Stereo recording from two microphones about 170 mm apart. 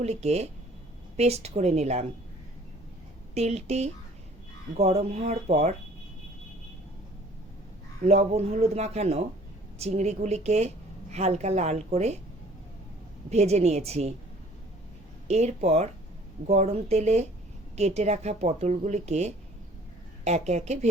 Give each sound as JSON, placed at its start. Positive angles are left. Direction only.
{"t": 0.0, "sound": "speech", "side_deg": -40}
{"t": 3.3, "sound": "speech", "side_deg": -40}
{"t": 8.0, "sound": "speech", "side_deg": -40}
{"t": 13.3, "sound": "speech", "side_deg": -40}
{"t": 15.3, "sound": "speech", "side_deg": -40}